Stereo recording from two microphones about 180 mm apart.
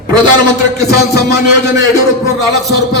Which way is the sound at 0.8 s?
65° left (ahead or behind).